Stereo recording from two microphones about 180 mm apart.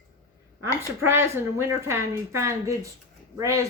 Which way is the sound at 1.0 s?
15° right (ahead or behind).